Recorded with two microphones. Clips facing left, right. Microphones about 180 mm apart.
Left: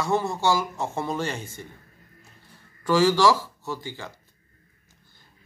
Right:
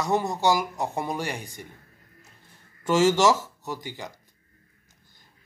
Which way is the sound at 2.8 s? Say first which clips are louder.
Left 1 dB; 20° right (ahead or behind).